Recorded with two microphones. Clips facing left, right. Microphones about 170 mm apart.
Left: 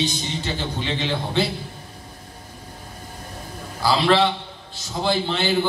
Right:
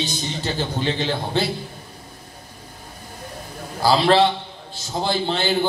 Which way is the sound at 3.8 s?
35° right (ahead or behind).